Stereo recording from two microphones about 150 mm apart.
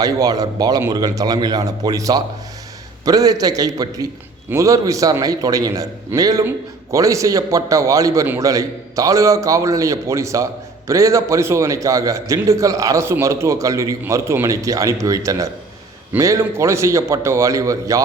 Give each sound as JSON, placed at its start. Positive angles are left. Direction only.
{"t": 0.0, "sound": "a man's voice", "side_deg": -25}